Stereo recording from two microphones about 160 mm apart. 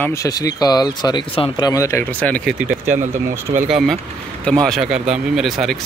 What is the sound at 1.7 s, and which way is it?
Speech, 20° left (ahead or behind).